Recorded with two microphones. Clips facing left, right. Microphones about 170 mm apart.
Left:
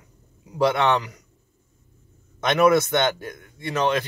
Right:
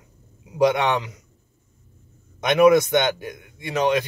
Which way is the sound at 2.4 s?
15° right (ahead or behind).